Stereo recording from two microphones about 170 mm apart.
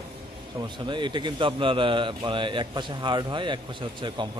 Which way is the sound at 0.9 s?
25° right (ahead or behind).